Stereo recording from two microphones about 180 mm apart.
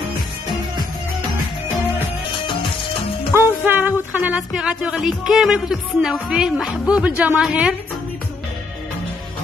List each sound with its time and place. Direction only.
2.4 s music: 30° left (ahead or behind)
3.3 s music: 10° right (ahead or behind)